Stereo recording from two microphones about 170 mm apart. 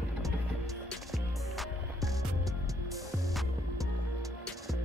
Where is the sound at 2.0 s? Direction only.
20° right (ahead or behind).